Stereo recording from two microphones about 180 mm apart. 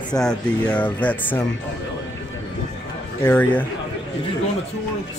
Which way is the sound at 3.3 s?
10° left (ahead or behind).